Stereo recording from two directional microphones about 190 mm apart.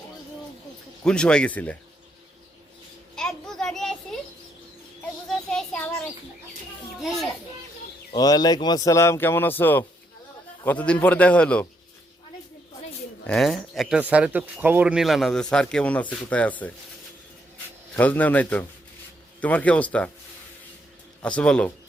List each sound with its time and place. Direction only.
1.0 s speech: 5° left (ahead or behind)
3.2 s child singing: 5° left (ahead or behind)
5.3 s child singing: 5° left (ahead or behind)
8.1 s speech: 20° left (ahead or behind)
13.2 s speech: centre (ahead or behind)
17.9 s speech: 10° left (ahead or behind)
21.2 s speech: 5° left (ahead or behind)